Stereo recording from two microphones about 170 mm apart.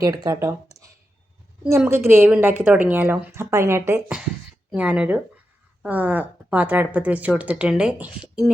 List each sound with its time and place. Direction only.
0.0 s speech: 20° right (ahead or behind)